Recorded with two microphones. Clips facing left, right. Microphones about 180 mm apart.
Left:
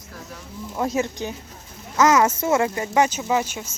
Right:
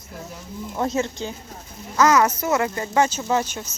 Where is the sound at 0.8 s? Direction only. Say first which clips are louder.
Even; 10° left (ahead or behind).